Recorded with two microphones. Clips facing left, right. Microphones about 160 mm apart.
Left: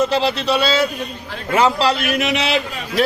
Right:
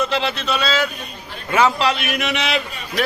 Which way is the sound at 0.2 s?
35° left (ahead or behind).